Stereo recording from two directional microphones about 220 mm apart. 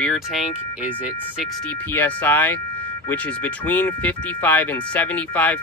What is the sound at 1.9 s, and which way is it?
Speech, 10° left (ahead or behind).